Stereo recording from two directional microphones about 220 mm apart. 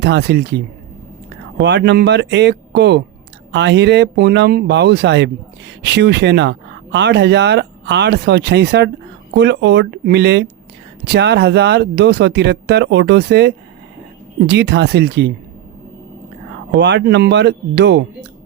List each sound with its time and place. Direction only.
0.0 s speech: 50° right (ahead or behind)
1.6 s speech: 55° right (ahead or behind)
16.7 s speech: 55° right (ahead or behind)